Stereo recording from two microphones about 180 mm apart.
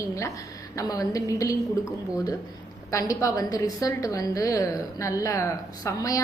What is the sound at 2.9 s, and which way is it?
A woman's voice, 20° left (ahead or behind).